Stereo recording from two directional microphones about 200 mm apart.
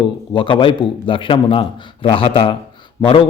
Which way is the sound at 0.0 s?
25° left (ahead or behind).